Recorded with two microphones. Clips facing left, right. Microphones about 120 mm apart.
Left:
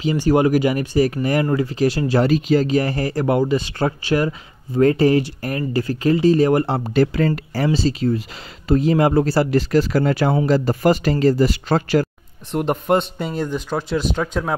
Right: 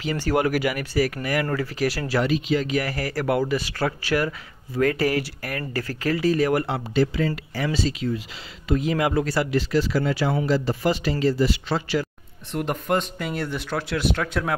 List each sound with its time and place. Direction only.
0.0 s speech: 20° left (ahead or behind)
2.2 s speech: 40° left (ahead or behind)
6.9 s speech: 55° left (ahead or behind)
7.6 s speech: 35° left (ahead or behind)
12.6 s speech: 30° left (ahead or behind); by 14.5 s 15° left (ahead or behind)